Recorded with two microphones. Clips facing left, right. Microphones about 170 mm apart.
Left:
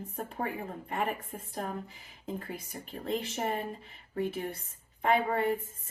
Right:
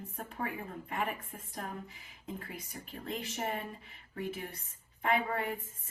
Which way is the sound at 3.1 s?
35° left (ahead or behind).